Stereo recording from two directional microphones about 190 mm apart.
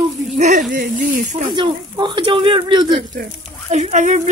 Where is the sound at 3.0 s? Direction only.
45° right (ahead or behind).